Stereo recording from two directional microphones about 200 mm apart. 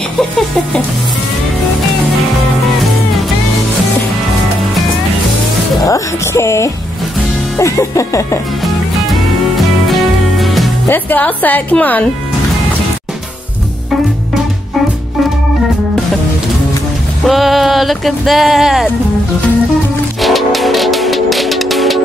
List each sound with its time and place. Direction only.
5.9 s music: 15° left (ahead or behind)
7.5 s a woman's voice: 15° left (ahead or behind)
9.6 s music: centre (ahead or behind)
10.9 s a woman's voice: 10° left (ahead or behind)
17.3 s music: centre (ahead or behind)
20.2 s music: centre (ahead or behind)